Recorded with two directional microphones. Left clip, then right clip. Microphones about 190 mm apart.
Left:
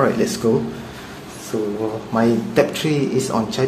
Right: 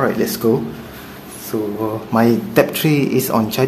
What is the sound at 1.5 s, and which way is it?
Speech, 30° right (ahead or behind).